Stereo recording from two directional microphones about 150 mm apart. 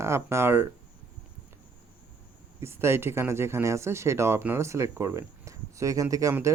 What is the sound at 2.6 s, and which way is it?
Speech, 15° right (ahead or behind).